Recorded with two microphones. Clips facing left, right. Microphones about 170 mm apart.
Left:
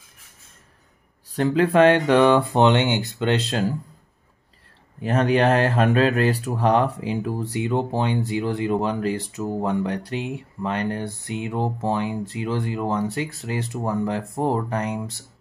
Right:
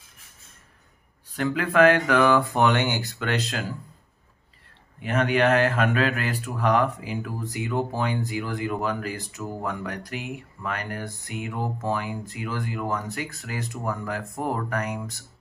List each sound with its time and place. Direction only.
1.3 s speech: 30° left (ahead or behind)
5.0 s speech: 35° left (ahead or behind)